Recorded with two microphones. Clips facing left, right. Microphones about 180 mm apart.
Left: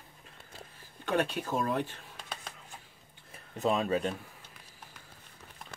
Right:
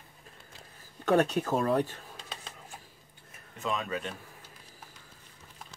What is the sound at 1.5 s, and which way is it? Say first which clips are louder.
Speech: right 4 dB; 40° right (ahead or behind).